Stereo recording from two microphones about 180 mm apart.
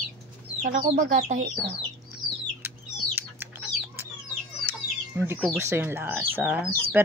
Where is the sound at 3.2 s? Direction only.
10° right (ahead or behind).